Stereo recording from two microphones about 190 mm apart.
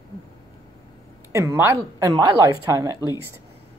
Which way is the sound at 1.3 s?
15° right (ahead or behind).